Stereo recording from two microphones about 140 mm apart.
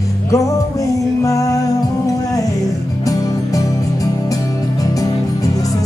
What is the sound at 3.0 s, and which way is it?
Music, 25° left (ahead or behind).